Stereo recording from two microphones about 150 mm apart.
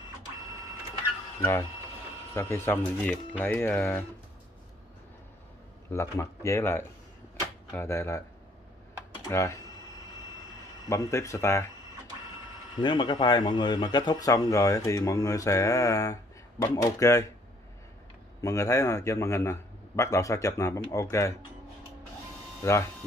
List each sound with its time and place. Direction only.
1.4 s speech: 15° left (ahead or behind)
5.9 s speech: 20° left (ahead or behind)
9.3 s speech: 20° left (ahead or behind)
10.9 s speech: 20° left (ahead or behind)
12.7 s speech: 30° left (ahead or behind)
18.4 s speech: 20° left (ahead or behind)
22.6 s speech: 20° left (ahead or behind)